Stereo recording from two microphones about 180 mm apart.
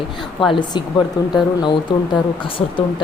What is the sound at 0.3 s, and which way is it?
Speech, 25° left (ahead or behind).